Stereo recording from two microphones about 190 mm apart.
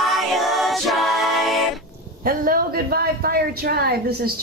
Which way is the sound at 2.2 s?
50° right (ahead or behind).